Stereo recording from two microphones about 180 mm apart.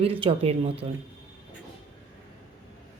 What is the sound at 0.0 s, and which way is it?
Speech, 30° right (ahead or behind).